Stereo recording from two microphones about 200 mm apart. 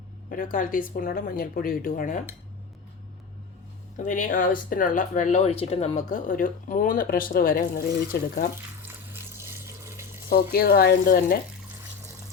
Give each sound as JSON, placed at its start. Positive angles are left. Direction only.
{"t": 0.3, "sound": "speech", "side_deg": 45}
{"t": 3.9, "sound": "speech", "side_deg": 40}
{"t": 8.8, "sound": "water", "side_deg": -10}
{"t": 10.5, "sound": "speech", "side_deg": 50}